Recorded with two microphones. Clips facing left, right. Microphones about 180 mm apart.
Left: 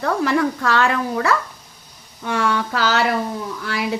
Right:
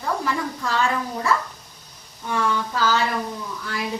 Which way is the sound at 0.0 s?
75° left (ahead or behind).